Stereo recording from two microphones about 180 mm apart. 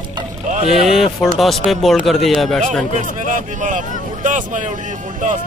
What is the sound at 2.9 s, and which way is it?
Speech, 45° right (ahead or behind).